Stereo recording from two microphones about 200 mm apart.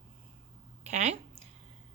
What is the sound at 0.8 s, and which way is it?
Speech, 30° right (ahead or behind).